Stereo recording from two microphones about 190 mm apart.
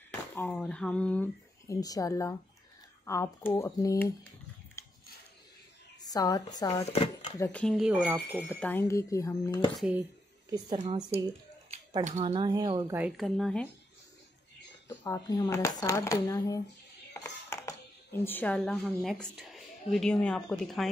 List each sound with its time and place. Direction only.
0.3 s speech: 10° left (ahead or behind)
4.8 s a sound: 15° left (ahead or behind)
5.9 s speech: 20° left (ahead or behind)
6.9 s speech: 30° left (ahead or behind)
7.3 s speech: 15° left (ahead or behind)
7.6 s speech: centre (ahead or behind)
8.5 s speech: 10° left (ahead or behind)
10.5 s a woman's voice: 25° right (ahead or behind)
12.0 s speech: 35° right (ahead or behind)
12.4 s a woman's voice: 20° right (ahead or behind)
12.9 s speech: 5° right (ahead or behind)
15.0 s speech: 20° left (ahead or behind)
17.1 s music: 15° left (ahead or behind)
19.3 s a woman's voice: centre (ahead or behind)